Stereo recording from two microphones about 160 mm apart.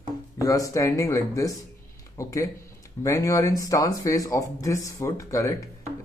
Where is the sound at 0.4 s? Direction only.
20° left (ahead or behind).